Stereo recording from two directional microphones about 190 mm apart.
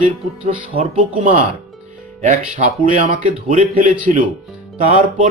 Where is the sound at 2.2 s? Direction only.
40° right (ahead or behind).